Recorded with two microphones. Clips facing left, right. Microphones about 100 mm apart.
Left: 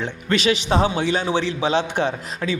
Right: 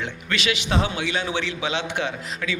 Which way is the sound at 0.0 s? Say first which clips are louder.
Left 6 dB; 35° left (ahead or behind).